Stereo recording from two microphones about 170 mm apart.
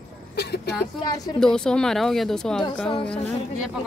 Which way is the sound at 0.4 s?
75° left (ahead or behind).